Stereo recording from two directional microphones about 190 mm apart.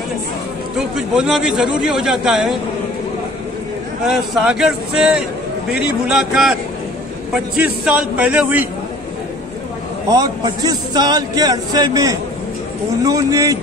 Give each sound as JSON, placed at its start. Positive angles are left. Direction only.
{"t": 0.7, "sound": "a man's voice", "side_deg": -5}
{"t": 4.0, "sound": "a man's voice", "side_deg": 0}
{"t": 10.0, "sound": "a man's voice", "side_deg": -20}